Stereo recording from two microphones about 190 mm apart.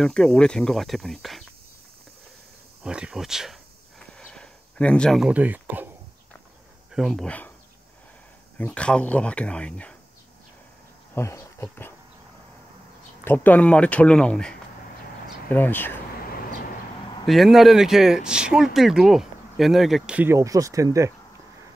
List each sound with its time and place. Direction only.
0.0 s speech: 5° left (ahead or behind)
2.8 s speech: 5° right (ahead or behind)
4.2 s a sound: 5° left (ahead or behind)
6.9 s speech: centre (ahead or behind)
8.5 s speech: 5° left (ahead or behind)
11.1 s speech: 15° left (ahead or behind)
13.2 s speech: 10° left (ahead or behind)
16.3 s vehicle: 50° left (ahead or behind)
17.3 s speech: centre (ahead or behind); by 21.1 s 15° right (ahead or behind)